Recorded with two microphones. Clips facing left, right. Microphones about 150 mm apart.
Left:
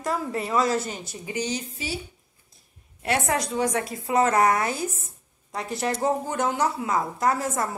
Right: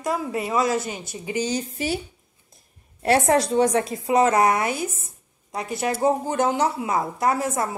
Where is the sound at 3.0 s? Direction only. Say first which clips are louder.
Right 6 dB; 35° right (ahead or behind); by 6.1 s 10° right (ahead or behind).